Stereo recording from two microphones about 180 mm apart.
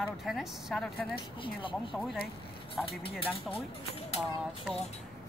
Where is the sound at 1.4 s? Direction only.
30° left (ahead or behind).